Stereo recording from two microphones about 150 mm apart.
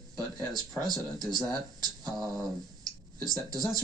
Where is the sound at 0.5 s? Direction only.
25° right (ahead or behind).